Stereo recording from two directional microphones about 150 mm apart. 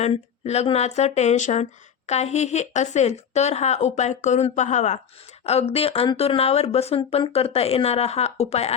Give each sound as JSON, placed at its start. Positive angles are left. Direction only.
{"t": 0.0, "sound": "speech", "side_deg": 45}